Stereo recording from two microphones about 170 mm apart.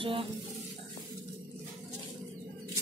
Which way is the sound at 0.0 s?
30° right (ahead or behind).